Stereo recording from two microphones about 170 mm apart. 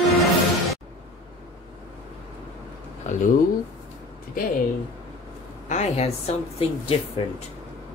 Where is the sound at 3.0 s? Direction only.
45° left (ahead or behind).